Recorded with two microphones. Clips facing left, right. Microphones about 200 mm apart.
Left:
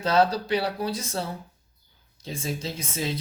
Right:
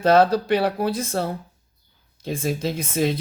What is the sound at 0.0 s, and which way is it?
Speech, 55° right (ahead or behind).